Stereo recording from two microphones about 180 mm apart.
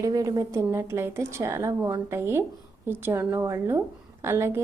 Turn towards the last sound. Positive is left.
turn(degrees=-15)  # may be behind; listen again after turning